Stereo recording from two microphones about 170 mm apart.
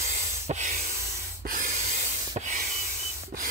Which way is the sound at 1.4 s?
50° right (ahead or behind).